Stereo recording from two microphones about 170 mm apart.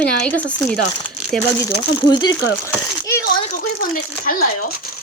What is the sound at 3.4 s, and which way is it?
Speech, 55° left (ahead or behind).